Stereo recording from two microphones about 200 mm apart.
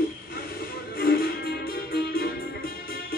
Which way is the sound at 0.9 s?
50° left (ahead or behind).